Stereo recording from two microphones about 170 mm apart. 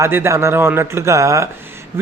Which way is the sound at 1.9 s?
15° right (ahead or behind).